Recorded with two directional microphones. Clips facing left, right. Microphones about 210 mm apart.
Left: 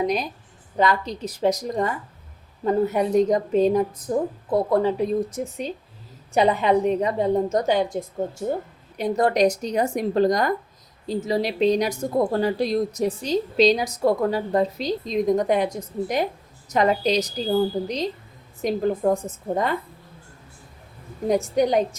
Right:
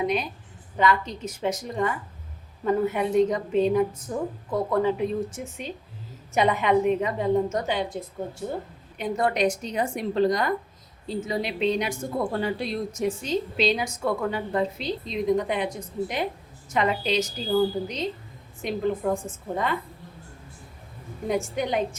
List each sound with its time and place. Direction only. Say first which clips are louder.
0.8 s a woman's voice: left 2 dB; 35° left (ahead or behind)
9.0 s a woman's voice: left 5 dB; 35° left (ahead or behind)
21.2 s a woman's voice: left 6 dB; 40° left (ahead or behind)